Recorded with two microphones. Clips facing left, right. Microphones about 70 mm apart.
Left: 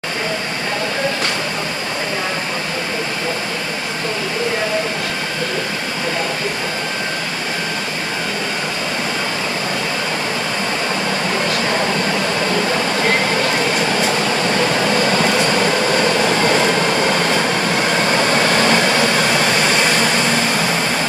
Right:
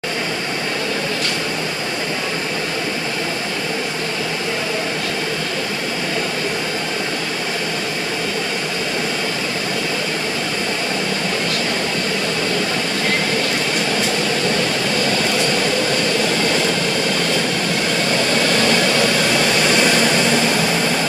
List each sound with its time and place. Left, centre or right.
14.8 s train: left; by 20.7 s centre